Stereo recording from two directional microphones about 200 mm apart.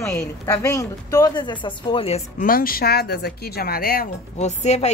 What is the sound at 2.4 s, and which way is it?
Speech, 45° left (ahead or behind).